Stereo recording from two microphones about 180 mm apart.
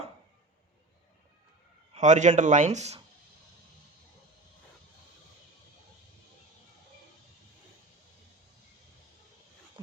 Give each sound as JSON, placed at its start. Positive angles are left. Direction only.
{"t": 1.9, "sound": "speech", "side_deg": -40}